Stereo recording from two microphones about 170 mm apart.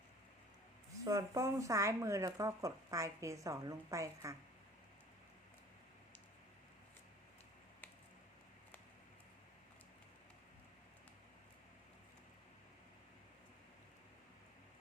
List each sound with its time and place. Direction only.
1.0 s speech: 20° right (ahead or behind)